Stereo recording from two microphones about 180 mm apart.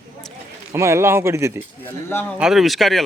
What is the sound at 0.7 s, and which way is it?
Speech, 15° right (ahead or behind).